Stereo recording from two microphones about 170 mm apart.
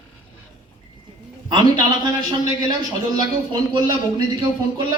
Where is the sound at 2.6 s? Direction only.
25° right (ahead or behind).